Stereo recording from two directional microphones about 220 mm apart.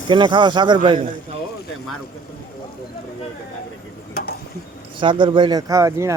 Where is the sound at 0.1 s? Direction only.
20° right (ahead or behind).